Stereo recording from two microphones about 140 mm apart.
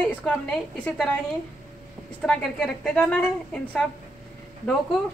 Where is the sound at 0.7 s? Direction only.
5° left (ahead or behind).